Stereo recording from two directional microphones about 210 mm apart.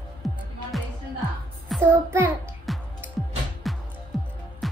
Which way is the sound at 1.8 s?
10° right (ahead or behind).